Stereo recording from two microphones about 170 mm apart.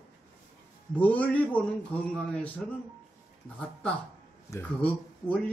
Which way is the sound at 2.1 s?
5° left (ahead or behind).